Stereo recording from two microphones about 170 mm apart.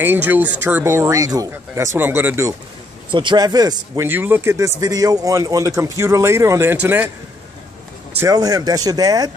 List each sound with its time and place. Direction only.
0.0 s speech: 10° right (ahead or behind)
3.1 s speech: 30° right (ahead or behind)
4.1 s speech: 10° right (ahead or behind)
8.2 s speech: 20° right (ahead or behind)